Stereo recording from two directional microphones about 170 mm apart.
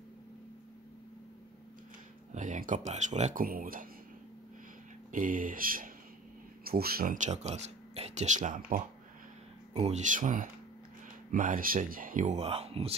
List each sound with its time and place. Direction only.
2.3 s speech: 50° right (ahead or behind)
5.1 s speech: 55° right (ahead or behind)
9.8 s speech: 40° right (ahead or behind)